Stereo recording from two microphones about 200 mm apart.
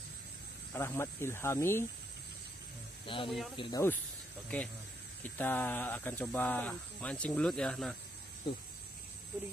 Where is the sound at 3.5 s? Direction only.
25° left (ahead or behind).